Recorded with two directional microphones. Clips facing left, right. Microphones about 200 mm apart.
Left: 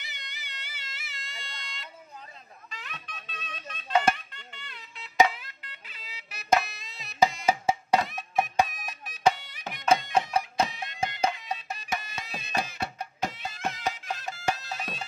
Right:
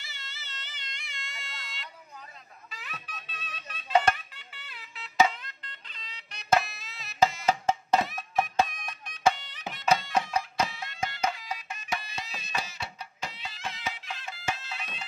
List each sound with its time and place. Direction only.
0.0 s a sound: 15° left (ahead or behind); by 1.9 s centre (ahead or behind)
2.7 s music: 5° right (ahead or behind)
4.3 s a sound: 5° right (ahead or behind)
5.1 s music: 10° left (ahead or behind)
7.4 s music: 10° left (ahead or behind); by 11.8 s 30° left (ahead or behind)
12.0 s music: 50° left (ahead or behind)